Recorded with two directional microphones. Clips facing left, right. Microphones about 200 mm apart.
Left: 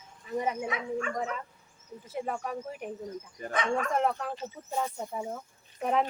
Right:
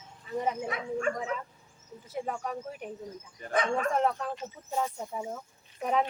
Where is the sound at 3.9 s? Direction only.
5° left (ahead or behind).